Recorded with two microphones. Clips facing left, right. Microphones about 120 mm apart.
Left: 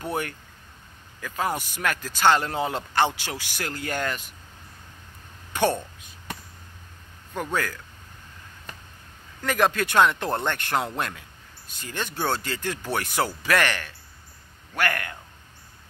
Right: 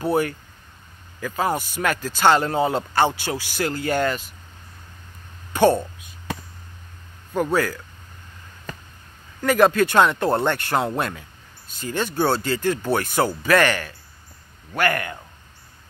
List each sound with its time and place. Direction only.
0.0 s speech: 5° right (ahead or behind)
5.5 s speech: 5° right (ahead or behind)
7.5 s speech: 10° right (ahead or behind)
9.4 s speech: 5° right (ahead or behind)